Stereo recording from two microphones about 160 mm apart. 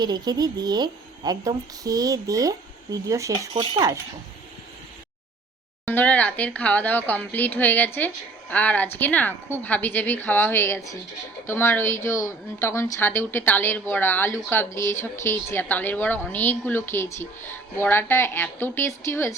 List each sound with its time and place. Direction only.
0.0 s a woman's voice: 25° right (ahead or behind)
3.5 s speech: 30° right (ahead or behind)
5.9 s a woman's voice: 10° left (ahead or behind)